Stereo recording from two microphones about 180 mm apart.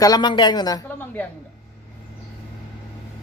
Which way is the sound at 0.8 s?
10° left (ahead or behind).